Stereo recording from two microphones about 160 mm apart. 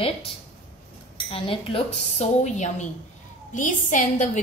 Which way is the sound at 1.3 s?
35° left (ahead or behind).